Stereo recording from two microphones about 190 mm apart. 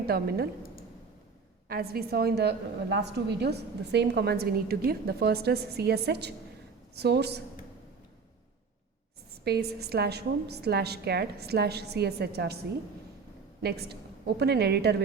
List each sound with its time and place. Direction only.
0.0 s a woman's voice: 55° right (ahead or behind)
1.6 s a woman's voice: 55° right (ahead or behind)
9.4 s a woman's voice: 60° right (ahead or behind)
13.6 s a woman's voice: 60° right (ahead or behind)